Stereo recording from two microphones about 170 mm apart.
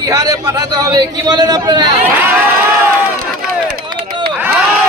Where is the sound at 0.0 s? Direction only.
20° right (ahead or behind).